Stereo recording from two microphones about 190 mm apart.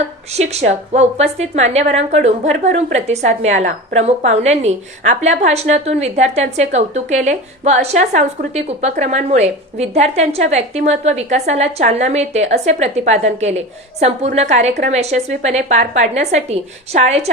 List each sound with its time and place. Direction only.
0.3 s a woman's voice: 35° right (ahead or behind)